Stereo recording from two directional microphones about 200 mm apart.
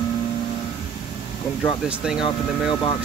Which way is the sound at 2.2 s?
25° left (ahead or behind).